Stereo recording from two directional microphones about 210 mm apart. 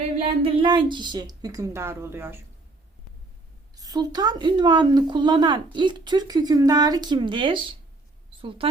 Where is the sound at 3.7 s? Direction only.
20° right (ahead or behind).